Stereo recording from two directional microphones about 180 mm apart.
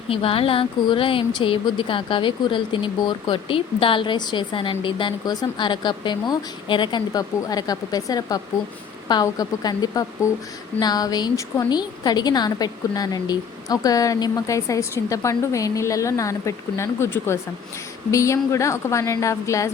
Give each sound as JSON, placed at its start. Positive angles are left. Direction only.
{"t": 0.1, "sound": "a woman's voice", "side_deg": 30}